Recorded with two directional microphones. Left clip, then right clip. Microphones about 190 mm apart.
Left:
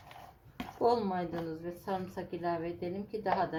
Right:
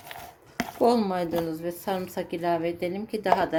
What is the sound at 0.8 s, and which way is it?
A woman's voice, 40° right (ahead or behind).